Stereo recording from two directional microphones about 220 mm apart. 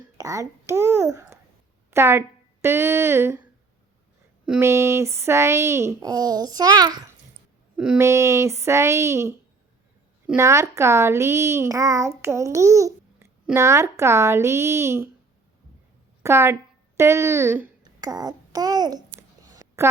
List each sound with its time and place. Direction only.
0.2 s a child's voice: 15° right (ahead or behind)
4.4 s a child's voice: 10° right (ahead or behind)
16.2 s a child's voice: 10° right (ahead or behind)
17.0 s babbling: 10° right (ahead or behind)